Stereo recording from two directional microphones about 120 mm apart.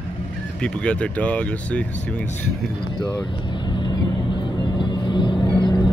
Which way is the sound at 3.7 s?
40° left (ahead or behind).